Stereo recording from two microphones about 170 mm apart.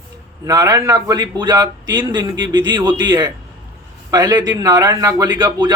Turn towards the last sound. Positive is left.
turn(degrees=-25)  # may be behind; listen again after turning